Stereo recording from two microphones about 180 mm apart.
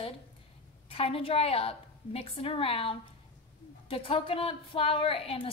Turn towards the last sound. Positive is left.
turn(degrees=30)  # may be behind; listen again after turning